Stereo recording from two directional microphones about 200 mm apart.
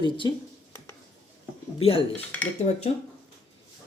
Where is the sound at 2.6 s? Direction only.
35° left (ahead or behind).